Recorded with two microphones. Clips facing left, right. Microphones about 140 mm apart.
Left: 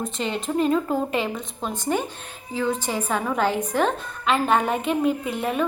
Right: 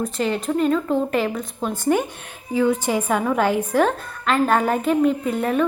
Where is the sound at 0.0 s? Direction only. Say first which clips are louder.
Right 4 dB; centre (ahead or behind).